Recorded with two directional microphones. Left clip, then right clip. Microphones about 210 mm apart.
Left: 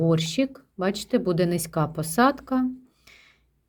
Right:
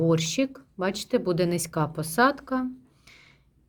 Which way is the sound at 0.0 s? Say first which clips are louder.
Even; centre (ahead or behind).